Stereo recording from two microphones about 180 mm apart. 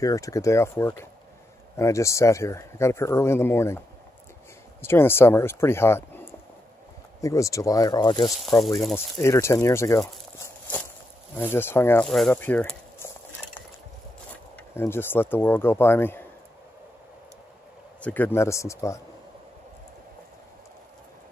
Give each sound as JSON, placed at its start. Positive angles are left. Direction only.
{"t": 0.0, "sound": "speech", "side_deg": 20}
{"t": 4.8, "sound": "speech", "side_deg": 10}
{"t": 8.5, "sound": "speech", "side_deg": 0}
{"t": 8.9, "sound": "speech", "side_deg": 15}
{"t": 14.8, "sound": "speech", "side_deg": 10}
{"t": 18.0, "sound": "speech", "side_deg": 10}